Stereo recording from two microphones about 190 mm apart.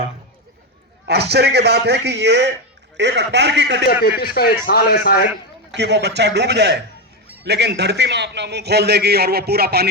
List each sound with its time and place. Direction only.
1.0 s a man's voice: 60° right (ahead or behind)
3.8 s a man's voice: 55° left (ahead or behind)
5.7 s a man's voice: 65° right (ahead or behind)